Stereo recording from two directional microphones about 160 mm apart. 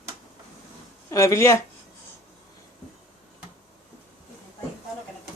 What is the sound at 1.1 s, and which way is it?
Speech, 20° left (ahead or behind).